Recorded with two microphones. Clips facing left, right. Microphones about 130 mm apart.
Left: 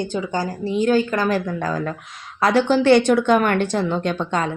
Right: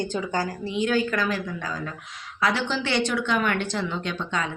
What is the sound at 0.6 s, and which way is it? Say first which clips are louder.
A woman's voice: left 8 dB; 40° left (ahead or behind).